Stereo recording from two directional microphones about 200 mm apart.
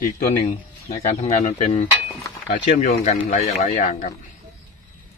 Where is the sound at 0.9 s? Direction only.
35° left (ahead or behind).